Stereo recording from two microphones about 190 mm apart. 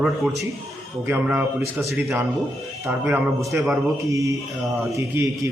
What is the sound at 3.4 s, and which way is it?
A man's voice, 15° right (ahead or behind).